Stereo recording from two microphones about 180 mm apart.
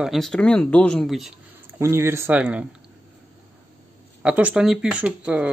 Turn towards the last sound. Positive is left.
turn(degrees=-5)  # may be behind; listen again after turning